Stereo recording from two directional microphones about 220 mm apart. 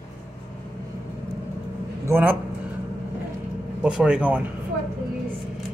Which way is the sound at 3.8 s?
5° right (ahead or behind).